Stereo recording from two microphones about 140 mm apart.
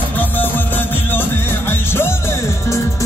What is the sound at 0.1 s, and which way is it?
Music, 15° left (ahead or behind).